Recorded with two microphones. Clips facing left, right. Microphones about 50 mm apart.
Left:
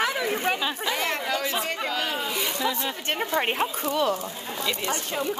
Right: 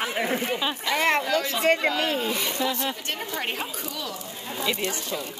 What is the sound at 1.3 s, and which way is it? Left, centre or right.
Speech, left.